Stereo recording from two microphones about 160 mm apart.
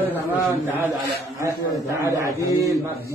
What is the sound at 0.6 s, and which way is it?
A man's voice, 15° right (ahead or behind).